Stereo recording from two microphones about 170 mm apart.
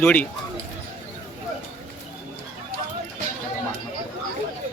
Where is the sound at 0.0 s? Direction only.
10° left (ahead or behind).